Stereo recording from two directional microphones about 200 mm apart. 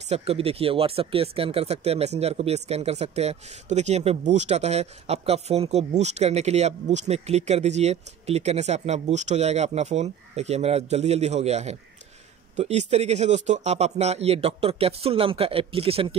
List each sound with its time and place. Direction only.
0.0 s speech: 30° right (ahead or behind)